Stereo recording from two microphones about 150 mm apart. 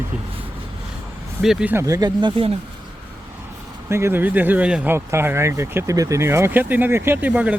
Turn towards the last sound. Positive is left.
turn(degrees=-10)  # may be behind; listen again after turning